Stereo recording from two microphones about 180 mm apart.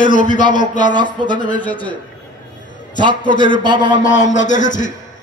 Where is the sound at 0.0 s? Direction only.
45° left (ahead or behind).